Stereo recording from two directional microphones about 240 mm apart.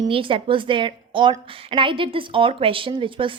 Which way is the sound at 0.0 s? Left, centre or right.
Right.